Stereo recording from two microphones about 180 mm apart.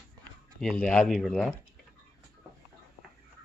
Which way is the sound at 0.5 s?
5° left (ahead or behind).